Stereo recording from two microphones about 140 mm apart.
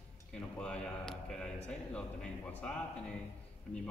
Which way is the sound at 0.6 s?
5° left (ahead or behind).